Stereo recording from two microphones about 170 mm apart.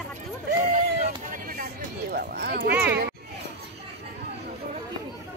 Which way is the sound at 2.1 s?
60° right (ahead or behind).